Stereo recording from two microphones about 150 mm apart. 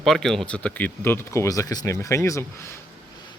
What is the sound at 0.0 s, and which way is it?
Speech, 5° left (ahead or behind).